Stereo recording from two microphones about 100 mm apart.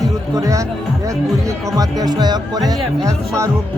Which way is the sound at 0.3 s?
35° right (ahead or behind).